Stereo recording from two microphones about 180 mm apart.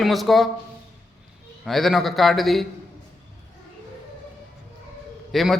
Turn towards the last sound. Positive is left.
turn(degrees=0)  # may be behind; listen again after turning